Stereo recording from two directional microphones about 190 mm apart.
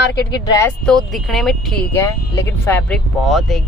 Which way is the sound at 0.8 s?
5° left (ahead or behind).